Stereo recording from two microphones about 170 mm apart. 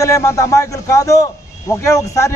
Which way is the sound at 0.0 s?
20° left (ahead or behind).